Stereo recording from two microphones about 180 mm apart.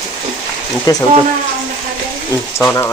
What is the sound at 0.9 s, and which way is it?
Speech, 20° left (ahead or behind).